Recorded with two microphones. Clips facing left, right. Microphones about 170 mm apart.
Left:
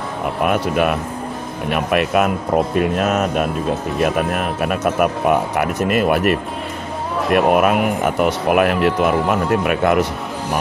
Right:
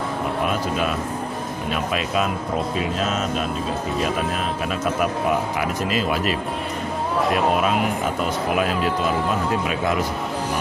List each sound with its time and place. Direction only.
0.5 s speech: 60° left (ahead or behind)